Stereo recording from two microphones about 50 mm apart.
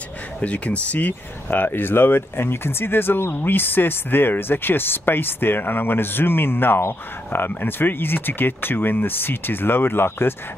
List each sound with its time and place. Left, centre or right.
0.4 s speech: left